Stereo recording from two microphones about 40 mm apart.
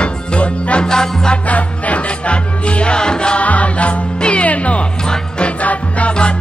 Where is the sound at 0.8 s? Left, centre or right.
Centre.